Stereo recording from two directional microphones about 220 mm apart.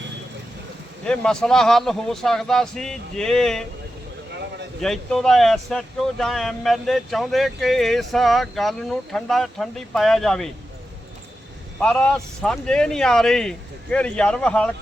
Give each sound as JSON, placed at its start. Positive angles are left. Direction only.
{"t": 1.0, "sound": "speech", "side_deg": 5}
{"t": 4.3, "sound": "a sound", "side_deg": -50}
{"t": 4.8, "sound": "speech", "side_deg": 0}
{"t": 11.8, "sound": "speech", "side_deg": 5}